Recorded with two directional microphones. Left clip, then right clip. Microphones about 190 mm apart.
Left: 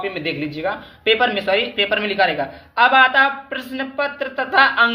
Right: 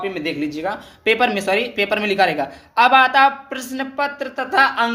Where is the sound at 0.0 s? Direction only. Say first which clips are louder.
Even; 15° right (ahead or behind).